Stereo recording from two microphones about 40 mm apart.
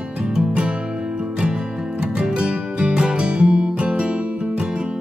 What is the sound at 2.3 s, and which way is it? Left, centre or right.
Music, right.